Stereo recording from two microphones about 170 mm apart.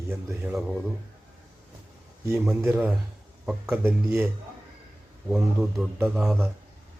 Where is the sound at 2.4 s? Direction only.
5° right (ahead or behind).